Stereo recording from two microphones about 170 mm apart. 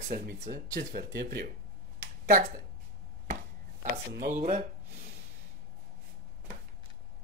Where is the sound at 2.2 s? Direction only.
50° right (ahead or behind).